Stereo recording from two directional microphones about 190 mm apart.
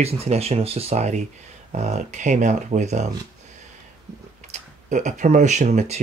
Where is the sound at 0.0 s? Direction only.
35° right (ahead or behind).